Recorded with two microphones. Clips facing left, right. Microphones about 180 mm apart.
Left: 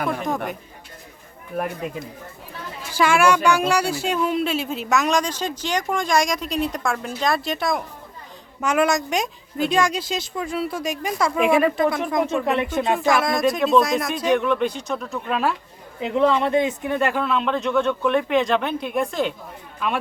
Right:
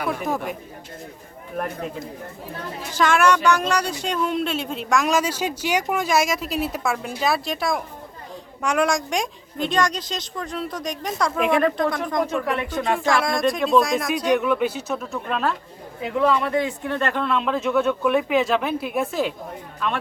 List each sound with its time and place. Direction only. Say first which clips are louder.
1.5 s a woman's voice: left 1 dB; 5° left (ahead or behind)
3.0 s a woman's voice: left 1 dB; 10° left (ahead or behind)
12.5 s speech: left 2 dB; 25° left (ahead or behind)
13.0 s speech: left 1 dB; centre (ahead or behind)
16.0 s speech: left 2 dB; 25° left (ahead or behind); by 19.3 s 5° right (ahead or behind)